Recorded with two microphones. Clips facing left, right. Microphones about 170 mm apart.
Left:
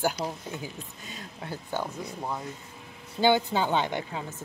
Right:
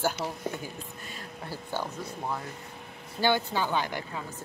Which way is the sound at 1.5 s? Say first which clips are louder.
Left 2 dB; 20° left (ahead or behind).